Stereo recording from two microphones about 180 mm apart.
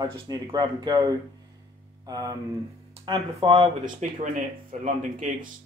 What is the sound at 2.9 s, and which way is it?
Speech, 30° right (ahead or behind).